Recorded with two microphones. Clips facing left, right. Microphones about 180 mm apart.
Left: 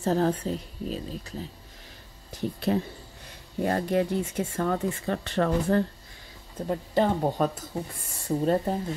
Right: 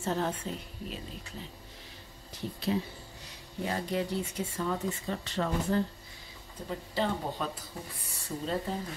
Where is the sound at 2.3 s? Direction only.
55° left (ahead or behind).